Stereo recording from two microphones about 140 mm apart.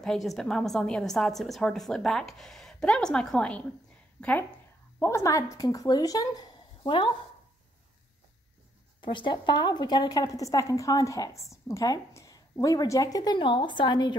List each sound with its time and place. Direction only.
0.0 s a woman's voice: centre (ahead or behind); by 7.1 s 30° left (ahead or behind)
9.0 s a woman's voice: 35° left (ahead or behind)